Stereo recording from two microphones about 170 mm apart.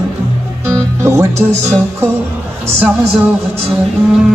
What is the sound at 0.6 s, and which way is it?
Music, 15° right (ahead or behind).